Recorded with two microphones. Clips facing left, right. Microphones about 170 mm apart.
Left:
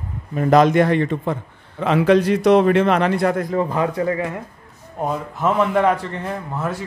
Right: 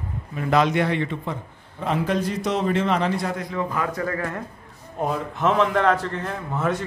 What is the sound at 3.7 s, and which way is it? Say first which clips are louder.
Speech: left 6 dB; 25° left (ahead or behind).